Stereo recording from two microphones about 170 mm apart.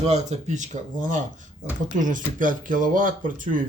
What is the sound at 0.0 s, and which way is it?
Speech, 40° right (ahead or behind).